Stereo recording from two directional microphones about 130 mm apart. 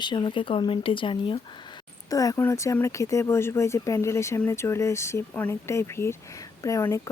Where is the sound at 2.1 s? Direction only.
25° left (ahead or behind).